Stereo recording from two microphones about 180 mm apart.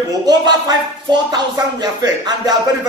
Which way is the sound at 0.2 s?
20° right (ahead or behind).